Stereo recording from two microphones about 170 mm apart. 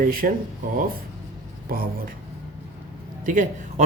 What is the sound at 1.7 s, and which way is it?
Speech, 60° right (ahead or behind).